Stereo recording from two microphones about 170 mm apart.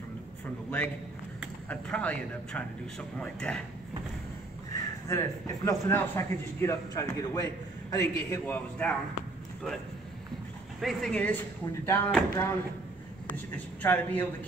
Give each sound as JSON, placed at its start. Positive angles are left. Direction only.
{"t": 1.7, "sound": "speech", "side_deg": 10}
{"t": 4.7, "sound": "a man's voice", "side_deg": 20}
{"t": 10.8, "sound": "speech", "side_deg": 0}
{"t": 13.8, "sound": "speech", "side_deg": 10}